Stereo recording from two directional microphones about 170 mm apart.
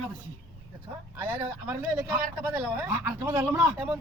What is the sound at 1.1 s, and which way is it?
A man's voice, 15° right (ahead or behind).